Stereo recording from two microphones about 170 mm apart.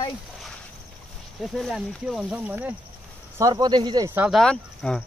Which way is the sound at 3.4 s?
20° right (ahead or behind).